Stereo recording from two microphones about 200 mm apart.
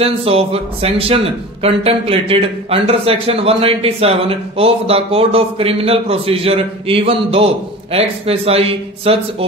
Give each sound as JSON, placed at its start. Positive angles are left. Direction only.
{"t": 0.0, "sound": "speech", "side_deg": -30}